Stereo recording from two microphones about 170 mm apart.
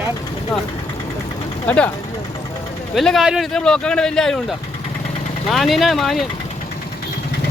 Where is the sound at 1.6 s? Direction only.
5° left (ahead or behind).